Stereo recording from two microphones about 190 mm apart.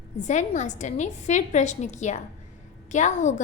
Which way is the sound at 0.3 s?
40° left (ahead or behind).